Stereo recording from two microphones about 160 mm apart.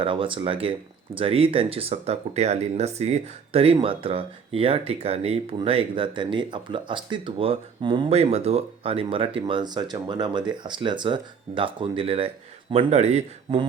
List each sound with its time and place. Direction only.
0.0 s speech: 35° right (ahead or behind)